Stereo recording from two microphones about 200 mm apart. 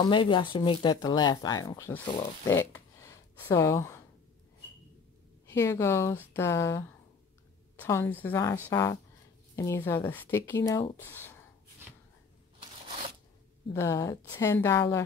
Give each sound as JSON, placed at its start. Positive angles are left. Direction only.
{"t": 0.0, "sound": "speech", "side_deg": 25}
{"t": 5.5, "sound": "speech", "side_deg": 15}
{"t": 7.8, "sound": "speech", "side_deg": 10}
{"t": 13.7, "sound": "speech", "side_deg": 15}